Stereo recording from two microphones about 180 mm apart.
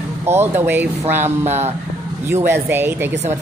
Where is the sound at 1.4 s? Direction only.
35° right (ahead or behind).